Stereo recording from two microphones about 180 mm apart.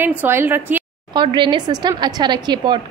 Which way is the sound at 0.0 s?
10° right (ahead or behind).